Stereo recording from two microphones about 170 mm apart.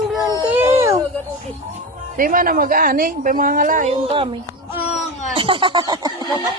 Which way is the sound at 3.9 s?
35° right (ahead or behind).